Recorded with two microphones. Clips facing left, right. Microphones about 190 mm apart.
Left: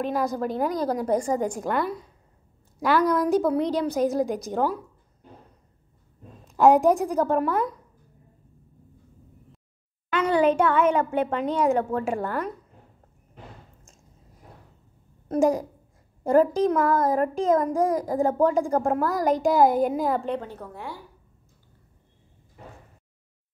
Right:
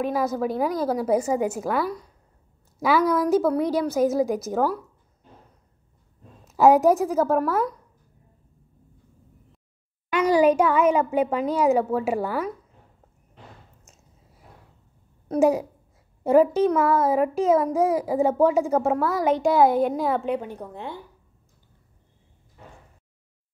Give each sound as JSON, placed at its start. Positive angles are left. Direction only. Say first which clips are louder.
{"t": 0.0, "sound": "a child's voice", "louder": "right 2 dB", "side_deg": -5}
{"t": 6.4, "sound": "a child's voice", "louder": "right 1 dB", "side_deg": -5}
{"t": 10.0, "sound": "a child's voice", "louder": "right 3 dB", "side_deg": -10}
{"t": 15.2, "sound": "a child's voice", "louder": "right 2 dB", "side_deg": -5}
{"t": 20.3, "sound": "a woman's voice", "louder": "right 2 dB", "side_deg": -15}